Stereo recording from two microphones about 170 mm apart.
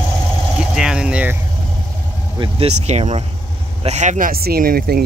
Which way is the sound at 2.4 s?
35° right (ahead or behind).